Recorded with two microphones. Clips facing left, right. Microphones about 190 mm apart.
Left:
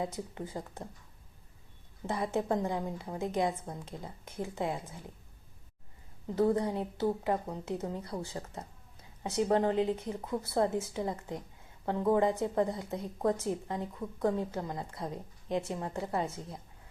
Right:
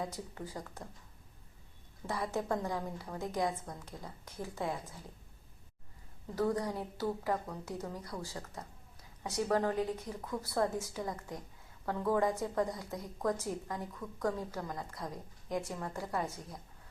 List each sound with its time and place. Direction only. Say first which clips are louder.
0.0 s speech: left 4 dB; 20° left (ahead or behind)
2.0 s speech: left 4 dB; 20° left (ahead or behind)
6.3 s speech: left 5 dB; 25° left (ahead or behind)